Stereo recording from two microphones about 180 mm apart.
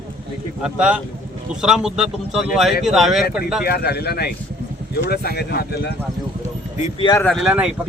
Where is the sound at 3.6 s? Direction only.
60° left (ahead or behind).